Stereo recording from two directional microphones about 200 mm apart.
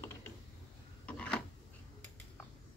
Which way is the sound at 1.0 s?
5° left (ahead or behind).